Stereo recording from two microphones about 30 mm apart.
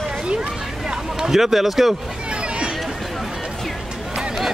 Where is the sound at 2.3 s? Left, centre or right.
Right.